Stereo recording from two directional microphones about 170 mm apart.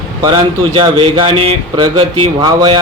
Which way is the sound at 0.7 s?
30° right (ahead or behind).